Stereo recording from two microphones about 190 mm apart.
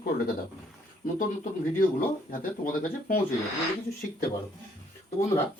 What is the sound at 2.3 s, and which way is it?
Speech, 45° left (ahead or behind).